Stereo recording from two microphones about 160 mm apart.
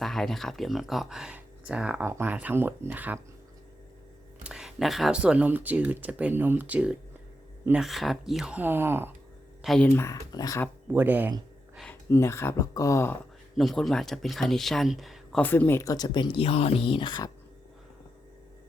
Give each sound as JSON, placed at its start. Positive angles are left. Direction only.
{"t": 0.0, "sound": "speech", "side_deg": 0}
{"t": 4.4, "sound": "speech", "side_deg": -5}
{"t": 9.6, "sound": "speech", "side_deg": 5}
{"t": 10.8, "sound": "speech", "side_deg": -10}
{"t": 12.0, "sound": "speech", "side_deg": 15}
{"t": 13.6, "sound": "speech", "side_deg": 0}